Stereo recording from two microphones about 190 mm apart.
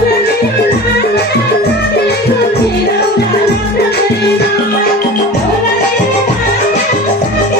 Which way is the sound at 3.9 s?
60° left (ahead or behind).